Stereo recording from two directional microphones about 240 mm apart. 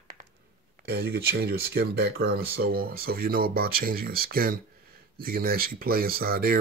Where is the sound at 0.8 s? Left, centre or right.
Right.